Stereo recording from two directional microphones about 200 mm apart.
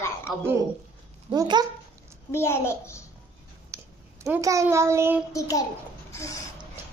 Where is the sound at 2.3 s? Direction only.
10° left (ahead or behind).